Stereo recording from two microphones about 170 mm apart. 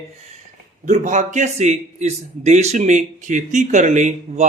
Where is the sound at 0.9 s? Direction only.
45° right (ahead or behind).